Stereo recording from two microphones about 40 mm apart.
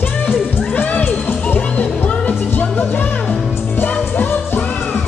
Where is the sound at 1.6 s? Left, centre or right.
Left.